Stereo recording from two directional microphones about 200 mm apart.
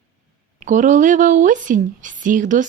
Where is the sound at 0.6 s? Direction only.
40° right (ahead or behind).